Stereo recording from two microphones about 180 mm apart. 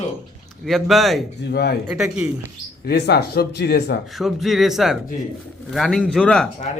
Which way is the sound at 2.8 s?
65° left (ahead or behind).